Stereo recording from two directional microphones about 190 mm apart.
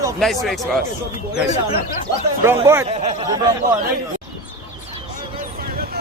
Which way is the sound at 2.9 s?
30° right (ahead or behind).